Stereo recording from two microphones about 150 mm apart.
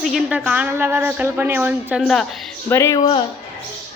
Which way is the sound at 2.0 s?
Centre (ahead or behind).